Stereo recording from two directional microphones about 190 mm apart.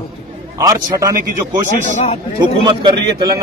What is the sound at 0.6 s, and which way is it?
Speech, 15° right (ahead or behind).